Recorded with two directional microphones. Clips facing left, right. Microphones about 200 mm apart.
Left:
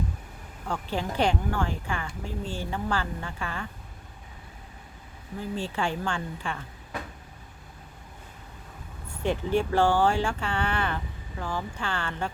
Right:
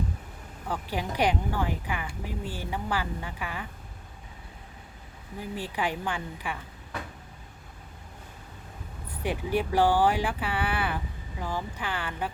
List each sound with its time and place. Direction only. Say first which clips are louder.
0.7 s speech: left 1 dB; 15° right (ahead or behind)
5.4 s speech: left 2 dB; 15° right (ahead or behind)
9.2 s speech: left 3 dB; 15° right (ahead or behind)